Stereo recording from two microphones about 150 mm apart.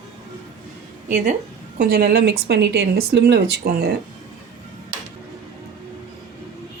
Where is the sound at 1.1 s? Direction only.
55° right (ahead or behind).